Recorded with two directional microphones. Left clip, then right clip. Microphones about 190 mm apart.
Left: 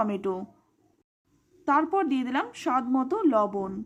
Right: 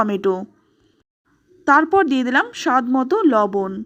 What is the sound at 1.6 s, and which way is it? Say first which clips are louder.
A woman's voice: right 10 dB; 25° right (ahead or behind).